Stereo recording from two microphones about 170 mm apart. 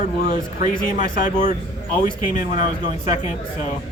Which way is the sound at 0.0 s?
45° left (ahead or behind).